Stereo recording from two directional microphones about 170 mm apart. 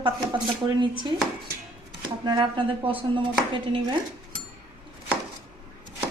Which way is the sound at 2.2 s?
25° right (ahead or behind).